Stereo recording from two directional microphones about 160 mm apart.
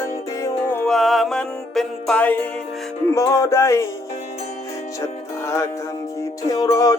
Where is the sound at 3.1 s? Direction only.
20° left (ahead or behind).